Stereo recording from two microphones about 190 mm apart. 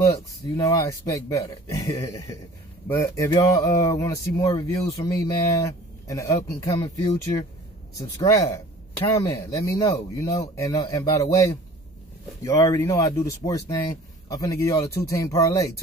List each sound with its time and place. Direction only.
0.0 s speech: 15° left (ahead or behind)